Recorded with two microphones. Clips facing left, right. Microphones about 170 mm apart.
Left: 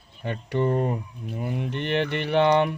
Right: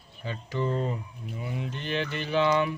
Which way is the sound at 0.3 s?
60° left (ahead or behind).